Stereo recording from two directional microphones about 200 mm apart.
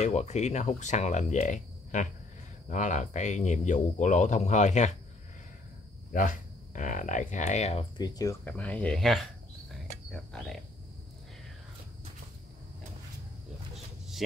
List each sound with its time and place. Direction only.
0.0 s speech: 35° left (ahead or behind)
6.1 s speech: 40° left (ahead or behind)
8.0 s speech: 20° left (ahead or behind); by 10.6 s centre (ahead or behind)